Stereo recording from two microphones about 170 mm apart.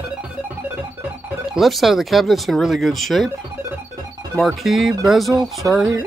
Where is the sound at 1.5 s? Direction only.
Centre (ahead or behind).